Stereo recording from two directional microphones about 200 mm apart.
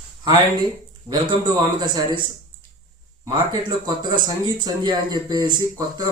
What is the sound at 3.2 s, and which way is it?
Speech, 20° right (ahead or behind).